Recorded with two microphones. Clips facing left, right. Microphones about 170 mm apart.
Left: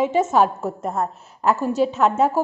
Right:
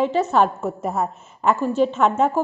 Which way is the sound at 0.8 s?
5° right (ahead or behind).